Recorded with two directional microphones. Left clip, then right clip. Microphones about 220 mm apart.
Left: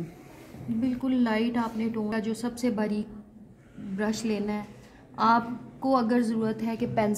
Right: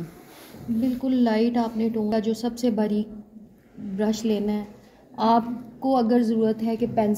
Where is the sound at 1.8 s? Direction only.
10° left (ahead or behind).